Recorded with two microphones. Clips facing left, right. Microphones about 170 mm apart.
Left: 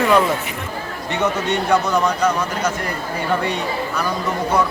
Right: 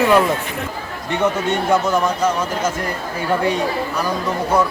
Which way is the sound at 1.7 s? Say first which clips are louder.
Even; 5° right (ahead or behind).